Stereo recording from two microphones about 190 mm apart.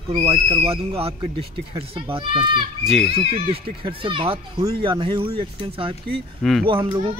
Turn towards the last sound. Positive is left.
turn(degrees=-25)  # may be behind; listen again after turning